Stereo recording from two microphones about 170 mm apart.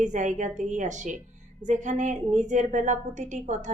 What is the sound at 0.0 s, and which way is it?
A woman's voice, 45° right (ahead or behind).